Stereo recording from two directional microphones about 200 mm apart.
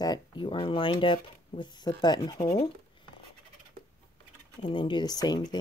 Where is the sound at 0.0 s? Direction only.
20° left (ahead or behind).